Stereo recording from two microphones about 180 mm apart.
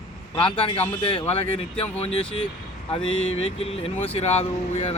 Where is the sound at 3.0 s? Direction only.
90° left.